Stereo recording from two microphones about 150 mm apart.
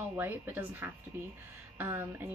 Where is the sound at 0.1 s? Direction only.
15° right (ahead or behind).